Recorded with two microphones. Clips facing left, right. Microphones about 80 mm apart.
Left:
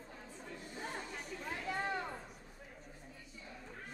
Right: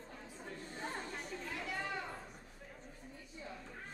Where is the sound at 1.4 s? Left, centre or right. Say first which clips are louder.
Left 4 dB; left.